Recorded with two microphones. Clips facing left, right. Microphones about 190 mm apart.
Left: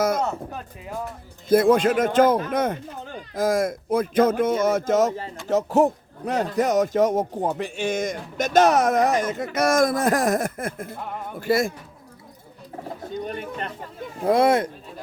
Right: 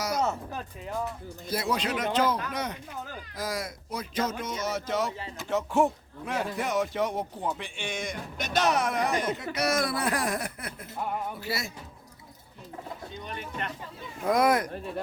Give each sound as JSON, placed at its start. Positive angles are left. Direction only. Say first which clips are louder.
{"t": 0.2, "sound": "speech", "louder": "left 2 dB", "side_deg": 0}
{"t": 1.5, "sound": "a man's voice", "louder": "left 13 dB", "side_deg": 50}
{"t": 13.1, "sound": "speech", "louder": "left 12 dB", "side_deg": 45}
{"t": 14.2, "sound": "speech", "louder": "left 5 dB", "side_deg": 30}